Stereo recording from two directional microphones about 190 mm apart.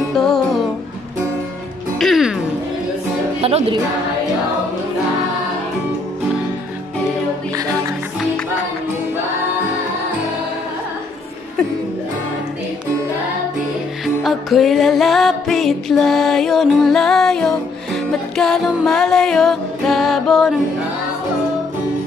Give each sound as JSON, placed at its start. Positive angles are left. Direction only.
{"t": 0.1, "sound": "music", "side_deg": 0}
{"t": 2.0, "sound": "music", "side_deg": 0}
{"t": 3.3, "sound": "speech", "side_deg": -30}
{"t": 14.0, "sound": "music", "side_deg": 0}